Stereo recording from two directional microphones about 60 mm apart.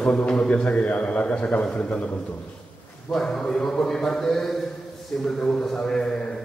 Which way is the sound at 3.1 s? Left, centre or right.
Centre.